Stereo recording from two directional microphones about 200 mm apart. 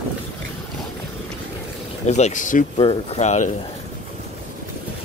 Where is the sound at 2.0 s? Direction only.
35° left (ahead or behind).